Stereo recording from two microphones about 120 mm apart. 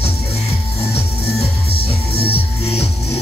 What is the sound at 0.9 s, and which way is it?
Music, 55° left (ahead or behind).